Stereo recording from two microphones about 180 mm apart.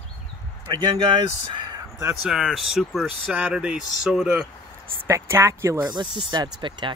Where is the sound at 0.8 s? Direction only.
25° right (ahead or behind).